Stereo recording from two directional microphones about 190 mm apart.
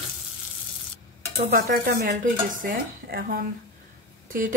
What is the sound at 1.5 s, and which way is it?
Speech, 50° right (ahead or behind).